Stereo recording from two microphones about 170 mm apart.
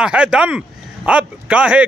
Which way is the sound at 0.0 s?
5° right (ahead or behind).